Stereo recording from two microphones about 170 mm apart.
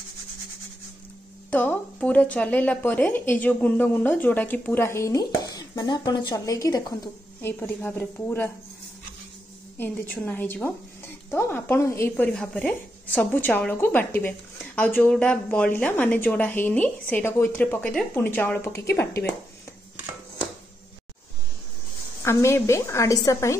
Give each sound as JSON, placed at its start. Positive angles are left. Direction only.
{"t": 1.5, "sound": "a woman's voice", "side_deg": 10}
{"t": 9.8, "sound": "a woman's voice", "side_deg": 10}
{"t": 22.2, "sound": "a woman's voice", "side_deg": 15}